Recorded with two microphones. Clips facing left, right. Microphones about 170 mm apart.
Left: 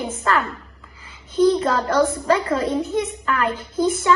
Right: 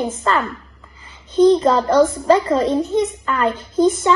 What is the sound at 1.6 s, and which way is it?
A child's voice, 25° right (ahead or behind).